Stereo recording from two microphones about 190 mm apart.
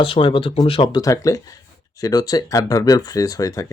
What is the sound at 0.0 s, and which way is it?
Speech, 25° left (ahead or behind).